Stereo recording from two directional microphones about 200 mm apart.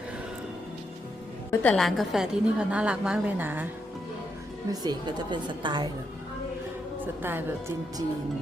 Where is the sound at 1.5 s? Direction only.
10° left (ahead or behind); by 3.6 s 10° right (ahead or behind).